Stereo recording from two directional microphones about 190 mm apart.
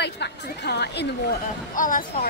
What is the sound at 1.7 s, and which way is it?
Speech, 45° left (ahead or behind).